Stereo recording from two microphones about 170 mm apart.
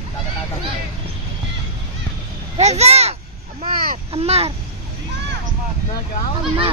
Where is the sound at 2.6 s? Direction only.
40° right (ahead or behind).